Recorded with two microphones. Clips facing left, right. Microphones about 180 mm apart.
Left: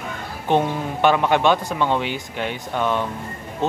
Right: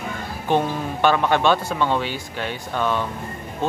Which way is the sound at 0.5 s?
15° left (ahead or behind).